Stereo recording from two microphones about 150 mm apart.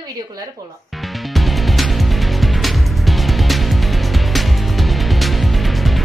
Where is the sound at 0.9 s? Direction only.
Centre (ahead or behind).